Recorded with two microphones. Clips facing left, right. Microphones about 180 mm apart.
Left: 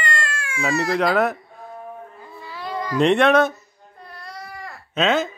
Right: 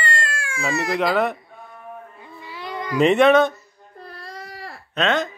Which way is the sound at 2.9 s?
Centre (ahead or behind).